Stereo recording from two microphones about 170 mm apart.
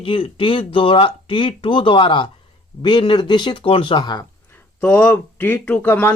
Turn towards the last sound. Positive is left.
turn(degrees=10)  # may be behind; listen again after turning